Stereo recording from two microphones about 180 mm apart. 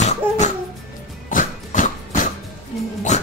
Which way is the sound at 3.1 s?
40° left (ahead or behind).